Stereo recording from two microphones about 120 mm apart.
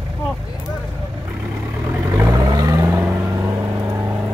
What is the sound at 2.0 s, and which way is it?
Vehicle, 25° right (ahead or behind).